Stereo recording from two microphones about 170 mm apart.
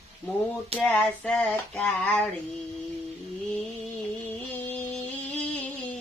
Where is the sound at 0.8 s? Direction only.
10° left (ahead or behind).